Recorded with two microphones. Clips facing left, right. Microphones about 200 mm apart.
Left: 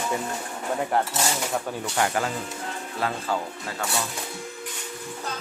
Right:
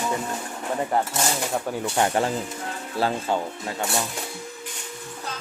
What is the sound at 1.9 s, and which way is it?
Speech, 30° right (ahead or behind).